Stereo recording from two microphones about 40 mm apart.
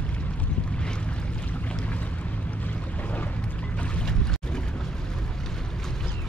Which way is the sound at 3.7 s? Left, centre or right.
Left.